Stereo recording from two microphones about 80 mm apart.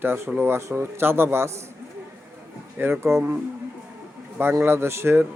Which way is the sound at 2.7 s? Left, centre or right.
Right.